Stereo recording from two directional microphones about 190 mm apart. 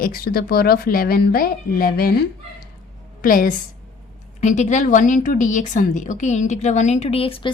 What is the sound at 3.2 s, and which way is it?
A woman's voice, 45° left (ahead or behind).